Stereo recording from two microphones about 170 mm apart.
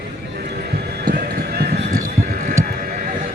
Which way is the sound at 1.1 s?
70° right (ahead or behind).